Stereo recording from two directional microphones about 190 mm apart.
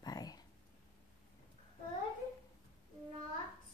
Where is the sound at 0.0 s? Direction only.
20° left (ahead or behind).